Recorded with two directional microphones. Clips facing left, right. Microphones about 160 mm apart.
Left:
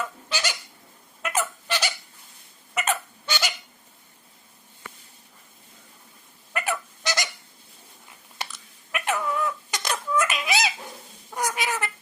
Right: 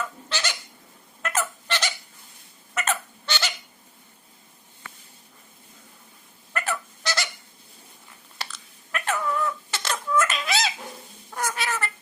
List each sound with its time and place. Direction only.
0.0 s goat: 10° left (ahead or behind)
1.2 s fowl: 10° left (ahead or behind)
2.7 s hiccup: 10° left (ahead or behind)
6.5 s goose: 15° left (ahead or behind)
8.4 s a sound: 15° left (ahead or behind)
11.3 s cat: 15° left (ahead or behind)